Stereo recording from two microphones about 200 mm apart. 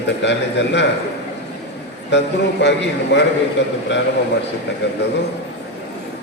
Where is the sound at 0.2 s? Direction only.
60° left (ahead or behind).